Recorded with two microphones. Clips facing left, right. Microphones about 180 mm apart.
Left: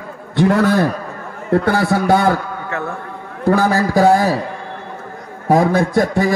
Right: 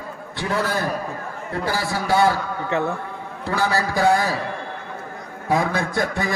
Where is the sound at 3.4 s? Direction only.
45° left (ahead or behind).